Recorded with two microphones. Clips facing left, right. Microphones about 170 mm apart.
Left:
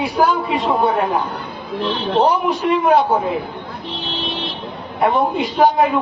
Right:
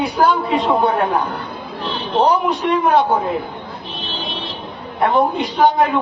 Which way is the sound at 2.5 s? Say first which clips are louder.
Left 1 dB; centre (ahead or behind).